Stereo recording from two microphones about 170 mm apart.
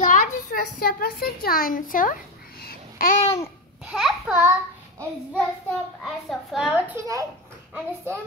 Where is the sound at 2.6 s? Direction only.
65° left (ahead or behind).